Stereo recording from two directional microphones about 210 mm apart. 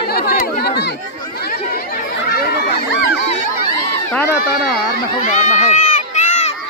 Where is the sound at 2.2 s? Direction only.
45° left (ahead or behind).